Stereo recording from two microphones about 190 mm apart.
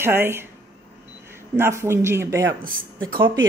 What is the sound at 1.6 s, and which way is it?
Speech, 15° right (ahead or behind).